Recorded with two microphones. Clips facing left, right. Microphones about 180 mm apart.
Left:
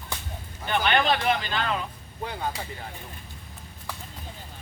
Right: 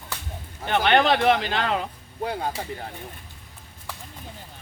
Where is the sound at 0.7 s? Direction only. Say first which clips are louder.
Right 4 dB; 70° right (ahead or behind).